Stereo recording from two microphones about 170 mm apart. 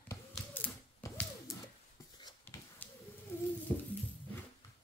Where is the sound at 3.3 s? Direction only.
15° left (ahead or behind).